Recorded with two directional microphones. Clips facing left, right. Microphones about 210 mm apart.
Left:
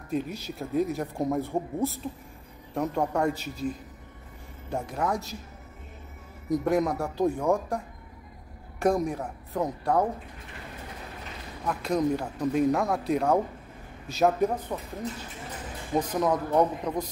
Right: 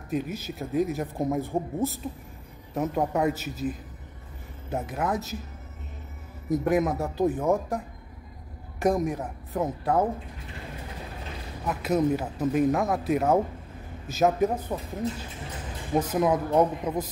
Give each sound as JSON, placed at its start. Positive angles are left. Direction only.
{"t": 0.1, "sound": "speech", "side_deg": 0}
{"t": 6.5, "sound": "speech", "side_deg": -5}
{"t": 11.6, "sound": "speech", "side_deg": -5}
{"t": 14.7, "sound": "speech", "side_deg": -20}
{"t": 15.9, "sound": "speech", "side_deg": -5}